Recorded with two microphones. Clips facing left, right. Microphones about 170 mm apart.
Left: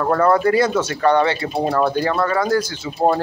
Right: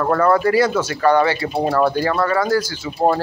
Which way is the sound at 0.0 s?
10° left (ahead or behind).